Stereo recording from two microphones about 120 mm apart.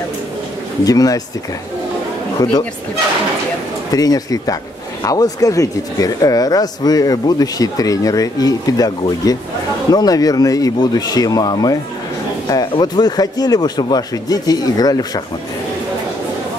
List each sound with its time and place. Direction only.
0.8 s speech: 30° left (ahead or behind)
3.9 s speech: 30° left (ahead or behind)